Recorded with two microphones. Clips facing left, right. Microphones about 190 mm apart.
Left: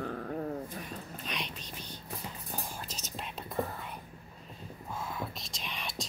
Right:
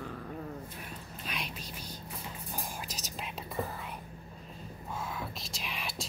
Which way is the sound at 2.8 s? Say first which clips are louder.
Even; centre (ahead or behind).